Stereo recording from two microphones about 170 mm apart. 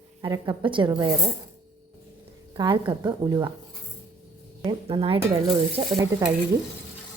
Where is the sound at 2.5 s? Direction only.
30° right (ahead or behind).